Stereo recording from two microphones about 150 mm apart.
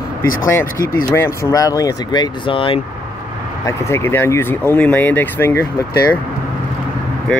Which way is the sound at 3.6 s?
20° left (ahead or behind).